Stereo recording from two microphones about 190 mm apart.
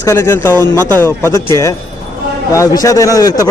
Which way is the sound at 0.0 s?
15° left (ahead or behind).